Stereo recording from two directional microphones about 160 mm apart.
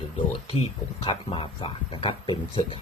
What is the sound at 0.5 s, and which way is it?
Speech, 35° left (ahead or behind).